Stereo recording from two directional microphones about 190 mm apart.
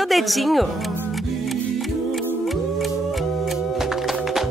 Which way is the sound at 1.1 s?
Centre (ahead or behind).